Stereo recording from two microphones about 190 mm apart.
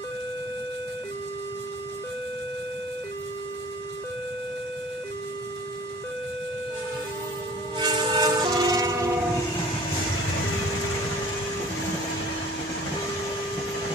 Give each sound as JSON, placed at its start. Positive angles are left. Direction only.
{"t": 7.7, "sound": "train", "side_deg": -25}